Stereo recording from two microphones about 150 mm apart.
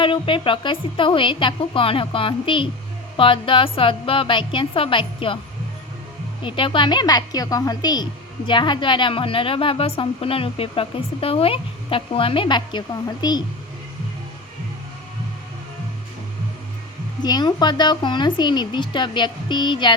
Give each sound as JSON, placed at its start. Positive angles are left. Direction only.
{"t": 0.0, "sound": "a woman's voice", "side_deg": 35}
{"t": 6.4, "sound": "a woman's voice", "side_deg": 35}
{"t": 17.2, "sound": "a woman's voice", "side_deg": 30}